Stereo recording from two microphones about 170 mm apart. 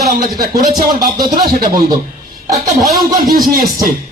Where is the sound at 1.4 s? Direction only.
60° right (ahead or behind).